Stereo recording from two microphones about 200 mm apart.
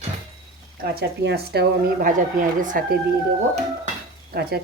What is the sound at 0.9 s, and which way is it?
Speech, 55° right (ahead or behind).